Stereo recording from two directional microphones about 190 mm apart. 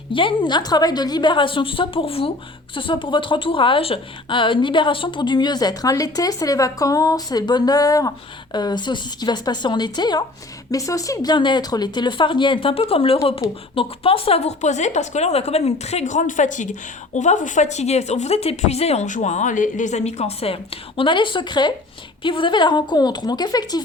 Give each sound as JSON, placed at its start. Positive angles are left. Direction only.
{"t": 0.1, "sound": "speech", "side_deg": 25}